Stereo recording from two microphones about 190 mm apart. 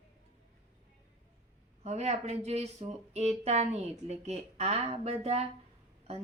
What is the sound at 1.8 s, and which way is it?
Speech, 35° right (ahead or behind).